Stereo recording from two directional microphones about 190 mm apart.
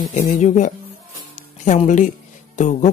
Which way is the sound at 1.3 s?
40° left (ahead or behind).